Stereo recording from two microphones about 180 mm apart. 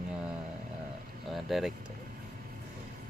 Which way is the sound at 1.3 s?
Centre (ahead or behind).